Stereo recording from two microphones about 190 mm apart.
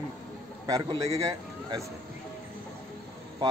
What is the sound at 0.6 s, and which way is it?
Speech, 20° right (ahead or behind).